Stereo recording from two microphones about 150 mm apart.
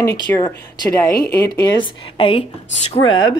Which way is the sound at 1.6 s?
30° left (ahead or behind).